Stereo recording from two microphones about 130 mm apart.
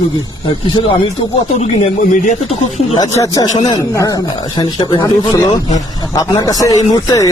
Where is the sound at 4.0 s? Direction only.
25° left (ahead or behind).